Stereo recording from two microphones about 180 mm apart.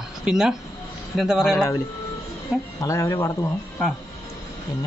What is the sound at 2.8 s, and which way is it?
Speech, 15° left (ahead or behind).